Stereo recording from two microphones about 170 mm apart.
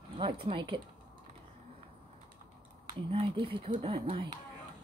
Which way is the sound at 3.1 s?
30° right (ahead or behind).